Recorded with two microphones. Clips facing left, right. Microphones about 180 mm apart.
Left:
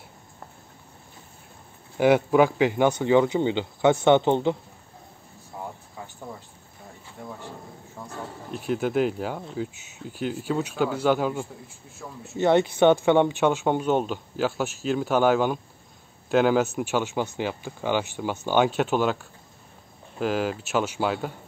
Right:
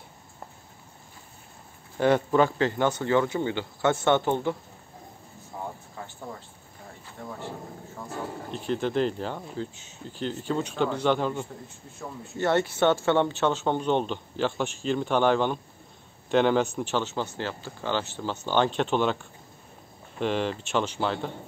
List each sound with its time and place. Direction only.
2.0 s speech: 10° left (ahead or behind)
6.0 s a sound: 15° left (ahead or behind)
7.2 s speech: 10° left (ahead or behind)
8.0 s wild animals: 10° left (ahead or behind)
8.5 s speech: 5° left (ahead or behind)
12.0 s speech: 5° right (ahead or behind)
12.4 s speech: 15° left (ahead or behind)
20.2 s speech: 5° left (ahead or behind)